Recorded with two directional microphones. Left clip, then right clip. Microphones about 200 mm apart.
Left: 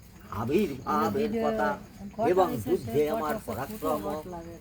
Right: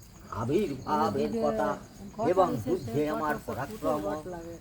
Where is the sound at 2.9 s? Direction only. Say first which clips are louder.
Left 2 dB; 50° left (ahead or behind).